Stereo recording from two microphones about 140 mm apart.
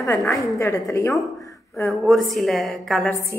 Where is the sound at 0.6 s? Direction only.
25° left (ahead or behind).